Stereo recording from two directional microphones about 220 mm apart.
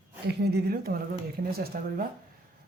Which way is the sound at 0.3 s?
45° right (ahead or behind).